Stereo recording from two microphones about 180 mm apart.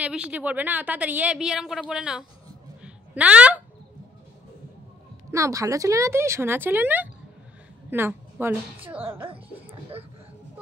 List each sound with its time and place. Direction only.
0.0 s a woman's voice: 5° right (ahead or behind)
2.8 s a sound: 5° right (ahead or behind)
5.3 s a woman's voice: 15° right (ahead or behind)